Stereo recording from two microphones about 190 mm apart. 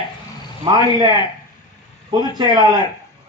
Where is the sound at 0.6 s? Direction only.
20° right (ahead or behind).